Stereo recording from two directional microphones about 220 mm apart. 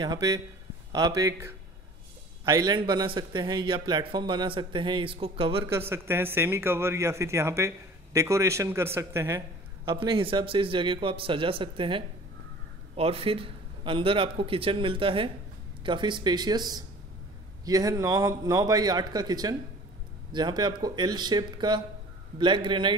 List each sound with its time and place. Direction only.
0.0 s a man's voice: 15° right (ahead or behind)
5.7 s speech: 10° right (ahead or behind)
9.9 s a man's voice: 25° right (ahead or behind)